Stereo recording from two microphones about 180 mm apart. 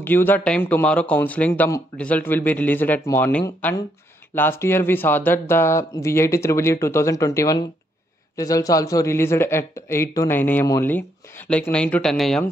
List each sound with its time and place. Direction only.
0.0 s speech: 10° left (ahead or behind)